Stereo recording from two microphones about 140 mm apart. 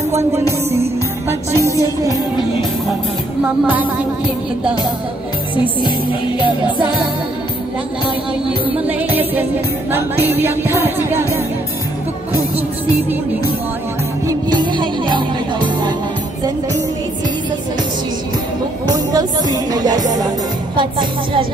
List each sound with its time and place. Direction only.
0.1 s speech: 20° right (ahead or behind)
8.7 s music: 10° right (ahead or behind)
14.2 s music: 30° right (ahead or behind)
18.9 s speech: 25° right (ahead or behind)
20.7 s music: 35° right (ahead or behind)